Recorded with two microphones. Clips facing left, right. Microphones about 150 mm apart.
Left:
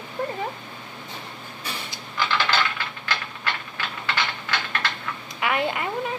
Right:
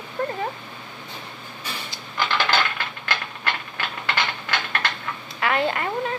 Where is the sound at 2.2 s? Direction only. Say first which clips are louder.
Right 1 dB; 55° right (ahead or behind).